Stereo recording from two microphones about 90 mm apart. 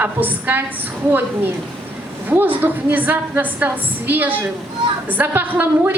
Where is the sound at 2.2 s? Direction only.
20° right (ahead or behind).